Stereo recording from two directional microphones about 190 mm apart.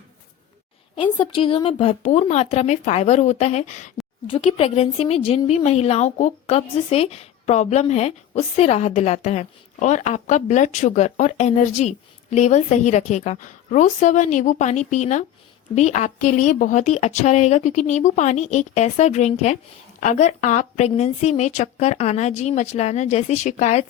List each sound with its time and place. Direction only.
0.9 s a woman's voice: 25° left (ahead or behind)